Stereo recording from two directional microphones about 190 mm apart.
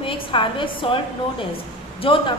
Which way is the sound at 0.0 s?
25° left (ahead or behind).